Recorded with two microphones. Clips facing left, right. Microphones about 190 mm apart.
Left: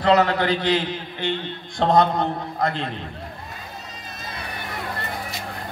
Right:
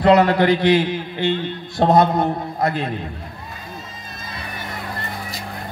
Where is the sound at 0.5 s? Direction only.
10° right (ahead or behind).